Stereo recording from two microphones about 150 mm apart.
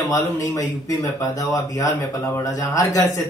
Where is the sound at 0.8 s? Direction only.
25° left (ahead or behind).